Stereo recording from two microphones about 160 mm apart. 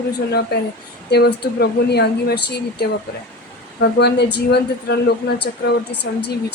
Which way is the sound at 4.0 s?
90° left.